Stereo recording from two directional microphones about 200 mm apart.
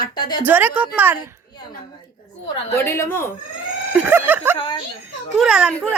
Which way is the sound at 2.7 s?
15° left (ahead or behind).